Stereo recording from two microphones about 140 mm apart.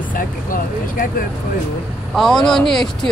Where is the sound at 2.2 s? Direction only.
5° left (ahead or behind).